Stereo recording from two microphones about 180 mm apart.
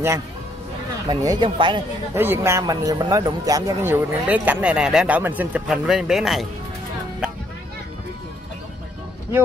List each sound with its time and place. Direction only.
1.0 s speech: 20° right (ahead or behind)
2.1 s speech: 10° right (ahead or behind)